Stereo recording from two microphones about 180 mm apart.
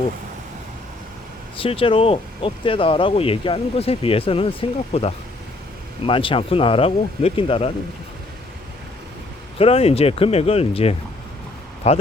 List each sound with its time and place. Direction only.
1.5 s speech: 30° left (ahead or behind)
9.6 s speech: 35° left (ahead or behind)